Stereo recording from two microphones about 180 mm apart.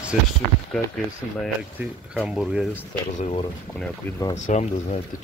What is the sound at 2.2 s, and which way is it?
Speech, 5° right (ahead or behind).